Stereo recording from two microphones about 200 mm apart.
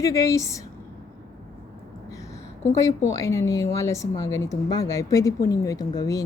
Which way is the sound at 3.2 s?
15° left (ahead or behind).